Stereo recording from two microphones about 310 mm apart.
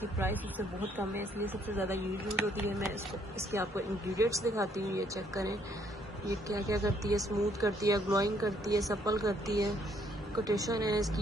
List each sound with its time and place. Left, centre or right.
0.2 s speech: centre